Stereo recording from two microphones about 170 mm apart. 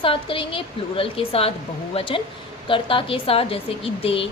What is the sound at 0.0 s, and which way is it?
A woman's voice, 30° left (ahead or behind).